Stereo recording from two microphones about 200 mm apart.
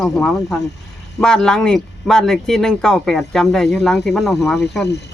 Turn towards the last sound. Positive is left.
turn(degrees=0)  # may be behind; listen again after turning